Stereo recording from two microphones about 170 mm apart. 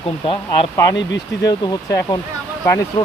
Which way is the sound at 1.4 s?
20° left (ahead or behind).